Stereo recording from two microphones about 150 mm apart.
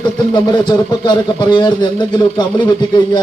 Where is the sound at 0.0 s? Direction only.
30° left (ahead or behind).